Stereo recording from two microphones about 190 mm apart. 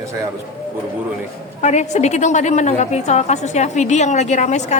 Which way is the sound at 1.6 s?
40° left (ahead or behind).